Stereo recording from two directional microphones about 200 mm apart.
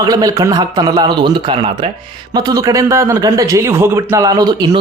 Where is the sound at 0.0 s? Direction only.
20° right (ahead or behind).